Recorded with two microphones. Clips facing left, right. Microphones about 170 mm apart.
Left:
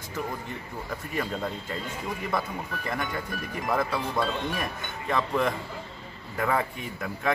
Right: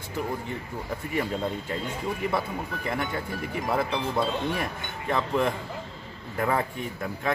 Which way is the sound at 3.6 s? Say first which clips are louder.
Even; 25° right (ahead or behind).